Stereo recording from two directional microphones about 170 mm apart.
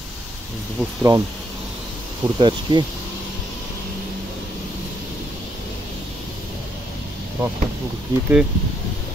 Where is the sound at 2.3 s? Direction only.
25° right (ahead or behind).